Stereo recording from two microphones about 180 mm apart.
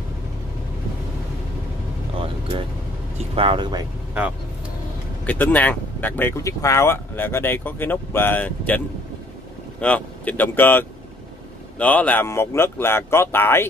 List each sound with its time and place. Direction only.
3.2 s speech: 30° right (ahead or behind)
5.2 s speech: 10° left (ahead or behind)